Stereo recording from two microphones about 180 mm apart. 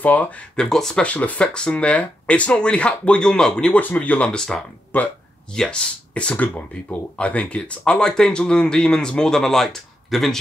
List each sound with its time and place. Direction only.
0.0 s speech: 10° left (ahead or behind)